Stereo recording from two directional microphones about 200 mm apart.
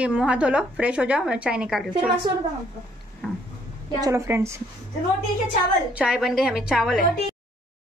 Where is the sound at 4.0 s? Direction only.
15° right (ahead or behind).